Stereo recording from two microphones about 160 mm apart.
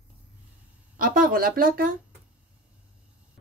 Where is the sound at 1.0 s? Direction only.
60° right (ahead or behind).